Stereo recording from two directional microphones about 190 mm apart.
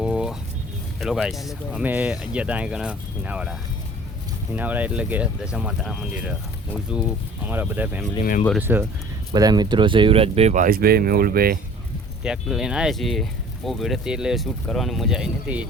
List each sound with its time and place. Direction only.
0.0 s a sound: 5° right (ahead or behind)
0.9 s speech: centre (ahead or behind)
9.3 s speech: 20° right (ahead or behind); by 11.6 s 50° right (ahead or behind)
12.2 s speech: 5° right (ahead or behind)